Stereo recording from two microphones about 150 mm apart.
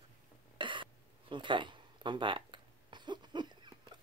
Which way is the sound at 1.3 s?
30° right (ahead or behind).